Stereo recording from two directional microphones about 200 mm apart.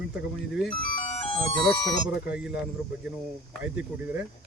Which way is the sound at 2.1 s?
5° right (ahead or behind).